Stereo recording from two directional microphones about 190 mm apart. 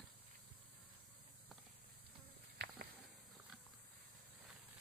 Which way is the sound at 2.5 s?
60° right (ahead or behind).